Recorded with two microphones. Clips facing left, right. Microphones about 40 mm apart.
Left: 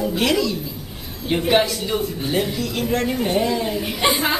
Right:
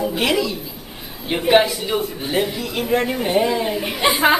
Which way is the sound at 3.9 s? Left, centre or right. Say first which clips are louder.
Right 1 dB; centre.